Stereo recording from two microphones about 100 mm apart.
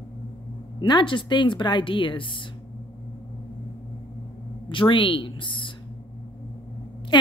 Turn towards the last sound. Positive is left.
turn(degrees=50)  # may be behind; listen again after turning